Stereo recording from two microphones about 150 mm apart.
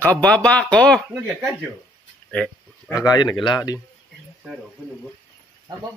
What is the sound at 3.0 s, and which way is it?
Speech, 25° left (ahead or behind).